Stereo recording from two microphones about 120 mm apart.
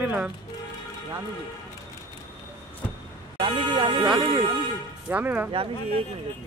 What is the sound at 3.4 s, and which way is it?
Speech, 45° right (ahead or behind).